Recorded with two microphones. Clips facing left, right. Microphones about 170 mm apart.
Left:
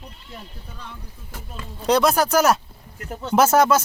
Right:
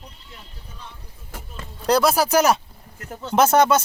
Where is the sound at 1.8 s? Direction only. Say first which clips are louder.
Even; centre (ahead or behind).